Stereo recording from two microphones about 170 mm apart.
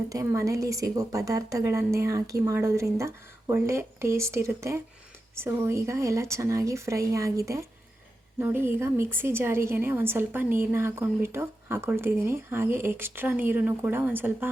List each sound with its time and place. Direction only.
0.1 s a woman's voice: 15° right (ahead or behind)